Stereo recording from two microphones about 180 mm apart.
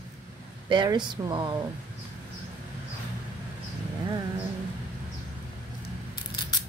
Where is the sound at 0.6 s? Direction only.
25° right (ahead or behind).